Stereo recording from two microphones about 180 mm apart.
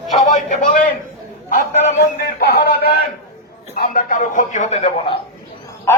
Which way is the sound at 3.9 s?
45° left (ahead or behind).